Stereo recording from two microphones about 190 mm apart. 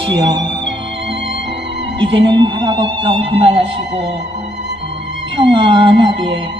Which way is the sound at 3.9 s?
65° right (ahead or behind).